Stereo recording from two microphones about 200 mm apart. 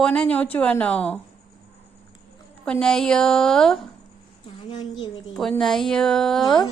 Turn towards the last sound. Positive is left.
turn(degrees=0)  # may be behind; listen again after turning